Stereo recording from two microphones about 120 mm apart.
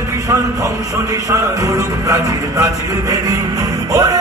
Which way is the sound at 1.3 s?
30° right (ahead or behind).